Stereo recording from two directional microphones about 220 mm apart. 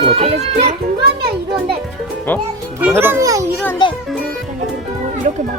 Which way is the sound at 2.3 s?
10° left (ahead or behind).